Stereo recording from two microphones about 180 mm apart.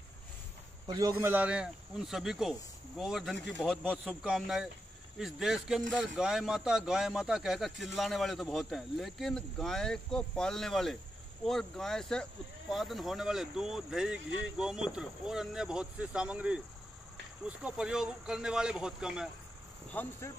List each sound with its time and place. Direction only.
0.8 s a man's voice: 20° right (ahead or behind)
1.1 s speech: 10° right (ahead or behind)
19.9 s speech: 10° left (ahead or behind)